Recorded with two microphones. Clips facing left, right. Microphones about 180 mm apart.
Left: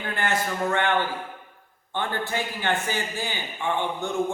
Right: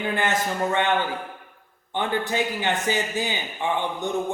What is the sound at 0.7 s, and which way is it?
A man's voice, 20° right (ahead or behind).